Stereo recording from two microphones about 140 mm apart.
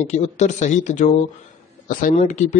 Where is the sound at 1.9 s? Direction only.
70° left (ahead or behind).